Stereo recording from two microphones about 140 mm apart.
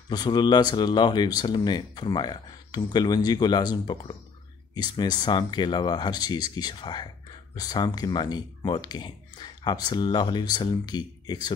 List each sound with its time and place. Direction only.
0.1 s speech: 30° left (ahead or behind)